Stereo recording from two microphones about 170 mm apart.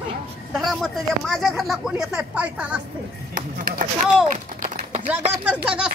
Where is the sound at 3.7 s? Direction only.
55° right (ahead or behind).